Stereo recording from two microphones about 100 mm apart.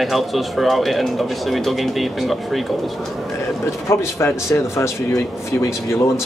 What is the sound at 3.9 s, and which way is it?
Speech, 30° left (ahead or behind).